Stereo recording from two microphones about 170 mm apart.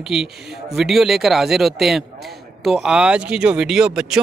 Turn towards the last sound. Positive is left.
turn(degrees=-5)  # may be behind; listen again after turning